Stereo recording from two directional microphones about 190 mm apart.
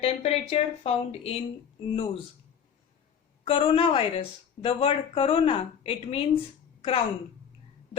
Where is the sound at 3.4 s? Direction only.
30° left (ahead or behind).